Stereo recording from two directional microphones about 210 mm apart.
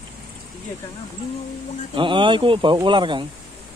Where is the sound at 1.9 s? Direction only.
25° right (ahead or behind).